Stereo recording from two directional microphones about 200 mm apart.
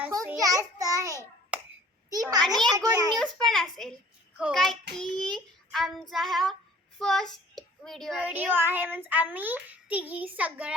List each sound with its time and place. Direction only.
0.1 s a child's voice: 15° right (ahead or behind)
3.2 s child singing: 5° left (ahead or behind)
7.0 s speech: centre (ahead or behind)